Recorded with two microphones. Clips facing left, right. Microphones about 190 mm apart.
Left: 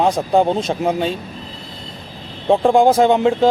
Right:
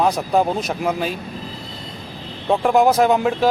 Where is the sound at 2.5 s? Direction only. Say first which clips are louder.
Left 3 dB; 30° left (ahead or behind).